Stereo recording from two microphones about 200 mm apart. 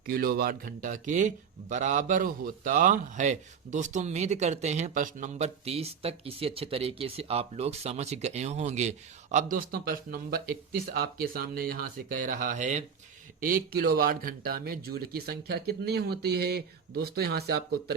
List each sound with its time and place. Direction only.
0.0 s a man's voice: 45° right (ahead or behind)